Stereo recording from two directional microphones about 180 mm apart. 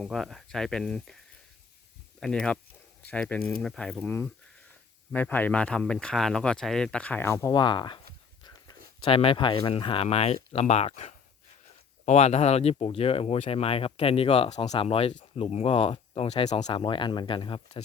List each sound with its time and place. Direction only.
0.0 s speech: centre (ahead or behind)
2.2 s speech: 5° left (ahead or behind); by 17.8 s 30° left (ahead or behind)